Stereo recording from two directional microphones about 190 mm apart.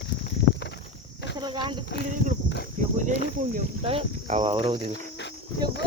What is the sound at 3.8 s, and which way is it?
Speech, 30° right (ahead or behind).